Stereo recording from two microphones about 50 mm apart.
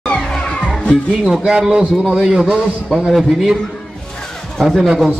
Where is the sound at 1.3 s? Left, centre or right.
Centre.